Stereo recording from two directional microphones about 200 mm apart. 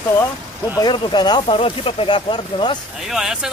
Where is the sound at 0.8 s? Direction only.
20° left (ahead or behind).